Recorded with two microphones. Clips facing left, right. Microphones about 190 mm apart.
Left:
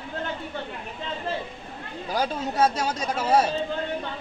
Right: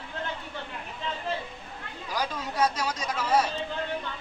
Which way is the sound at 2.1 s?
25° left (ahead or behind).